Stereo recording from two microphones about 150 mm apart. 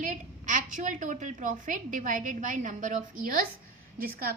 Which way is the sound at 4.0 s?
80° right.